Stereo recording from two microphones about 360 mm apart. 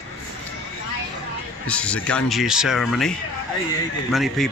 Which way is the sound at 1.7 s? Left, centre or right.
Centre.